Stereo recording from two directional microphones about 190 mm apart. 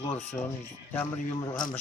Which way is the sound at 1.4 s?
25° left (ahead or behind).